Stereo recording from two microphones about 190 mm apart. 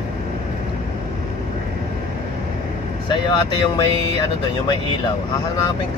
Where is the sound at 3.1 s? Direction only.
25° left (ahead or behind).